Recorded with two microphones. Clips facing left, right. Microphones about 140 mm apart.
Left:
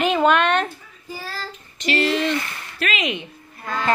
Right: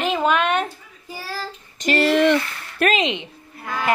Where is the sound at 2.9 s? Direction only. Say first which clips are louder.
Right 4 dB; 25° right (ahead or behind).